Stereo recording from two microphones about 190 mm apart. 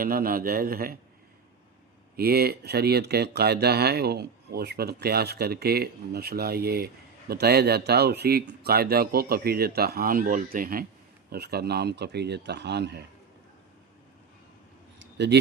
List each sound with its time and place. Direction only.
0.0 s a man's voice: 50° right (ahead or behind)
2.1 s speech: 55° right (ahead or behind)
14.9 s a sound: 65° right (ahead or behind)